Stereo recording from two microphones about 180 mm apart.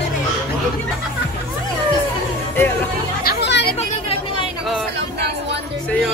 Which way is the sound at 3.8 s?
35° left (ahead or behind).